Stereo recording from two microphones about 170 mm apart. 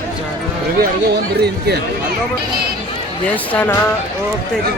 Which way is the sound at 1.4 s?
70° right (ahead or behind).